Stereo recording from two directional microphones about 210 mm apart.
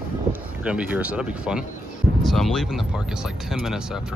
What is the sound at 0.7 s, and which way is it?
Speech, 5° right (ahead or behind).